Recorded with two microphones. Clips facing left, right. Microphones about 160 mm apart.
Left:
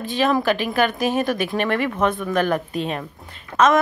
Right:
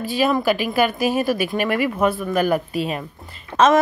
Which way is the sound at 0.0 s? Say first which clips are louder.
Right 1 dB; 10° right (ahead or behind).